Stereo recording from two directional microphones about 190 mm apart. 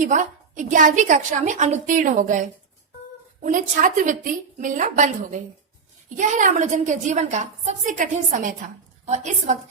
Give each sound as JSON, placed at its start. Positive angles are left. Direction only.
{"t": 0.0, "sound": "a woman's voice", "side_deg": -40}